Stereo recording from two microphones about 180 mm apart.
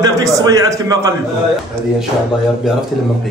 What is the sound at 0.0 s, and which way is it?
A man's voice, 20° right (ahead or behind).